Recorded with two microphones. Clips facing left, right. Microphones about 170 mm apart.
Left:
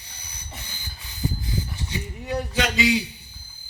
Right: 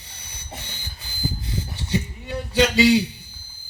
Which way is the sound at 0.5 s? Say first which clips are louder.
Right 3 dB; 30° right (ahead or behind).